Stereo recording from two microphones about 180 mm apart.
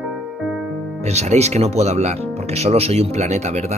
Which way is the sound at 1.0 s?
35° right (ahead or behind).